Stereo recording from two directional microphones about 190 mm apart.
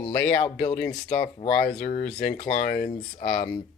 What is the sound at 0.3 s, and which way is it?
Speech, 40° left (ahead or behind).